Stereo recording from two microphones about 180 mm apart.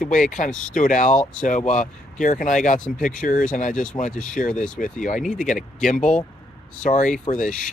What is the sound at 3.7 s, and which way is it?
Speech, 5° left (ahead or behind).